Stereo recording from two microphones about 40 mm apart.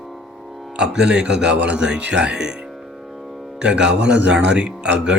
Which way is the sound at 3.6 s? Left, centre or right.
Right.